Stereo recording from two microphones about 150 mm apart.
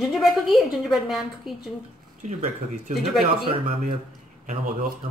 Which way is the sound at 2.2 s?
55° right (ahead or behind).